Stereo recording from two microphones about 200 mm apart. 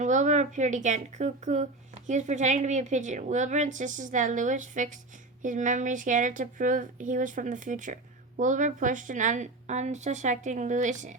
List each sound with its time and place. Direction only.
0.0 s a woman's voice: 35° right (ahead or behind)